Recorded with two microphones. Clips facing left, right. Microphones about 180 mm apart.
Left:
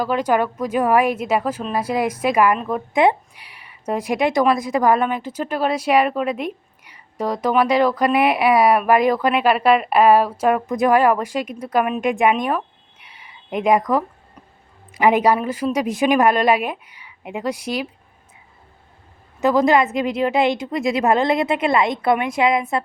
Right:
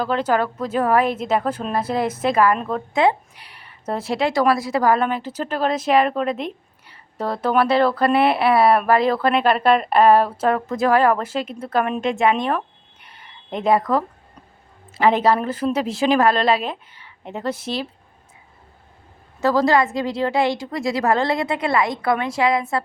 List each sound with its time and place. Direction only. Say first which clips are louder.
0.0 s a woman's voice: left 1 dB; 10° left (ahead or behind)
19.4 s a woman's voice: left 1 dB; 20° left (ahead or behind)